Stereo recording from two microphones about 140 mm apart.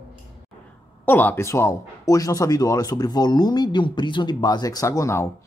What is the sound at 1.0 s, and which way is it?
Speech, 15° left (ahead or behind).